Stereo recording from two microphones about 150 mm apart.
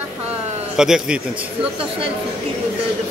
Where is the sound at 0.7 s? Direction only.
5° right (ahead or behind).